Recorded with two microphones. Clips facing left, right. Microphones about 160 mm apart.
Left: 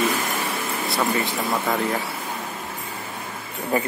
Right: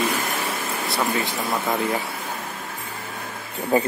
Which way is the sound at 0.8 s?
Centre (ahead or behind).